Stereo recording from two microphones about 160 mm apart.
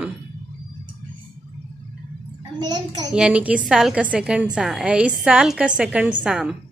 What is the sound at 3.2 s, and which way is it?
A woman's voice, 5° right (ahead or behind).